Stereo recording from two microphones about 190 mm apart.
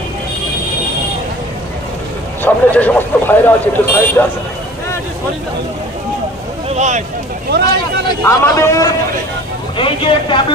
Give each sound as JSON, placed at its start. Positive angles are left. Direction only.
{"t": 2.4, "sound": "speech", "side_deg": 10}
{"t": 7.5, "sound": "speech", "side_deg": -60}
{"t": 8.2, "sound": "speech", "side_deg": 15}
{"t": 9.8, "sound": "a man's voice", "side_deg": 25}